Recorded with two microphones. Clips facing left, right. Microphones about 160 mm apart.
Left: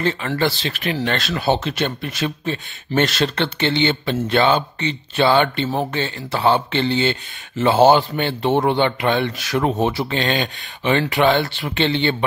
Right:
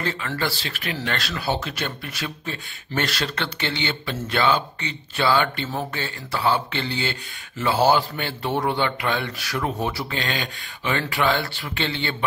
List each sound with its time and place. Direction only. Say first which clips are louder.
0.0 s speech: left 6 dB; 25° left (ahead or behind)